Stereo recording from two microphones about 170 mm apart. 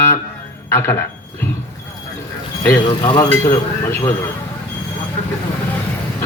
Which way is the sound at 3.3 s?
15° left (ahead or behind).